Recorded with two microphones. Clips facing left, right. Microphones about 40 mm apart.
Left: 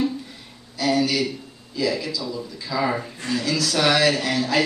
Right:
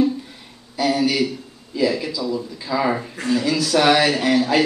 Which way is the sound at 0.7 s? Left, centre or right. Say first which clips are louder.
Right 2 dB; centre.